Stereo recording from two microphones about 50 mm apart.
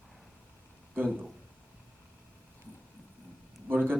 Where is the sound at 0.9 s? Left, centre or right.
Right.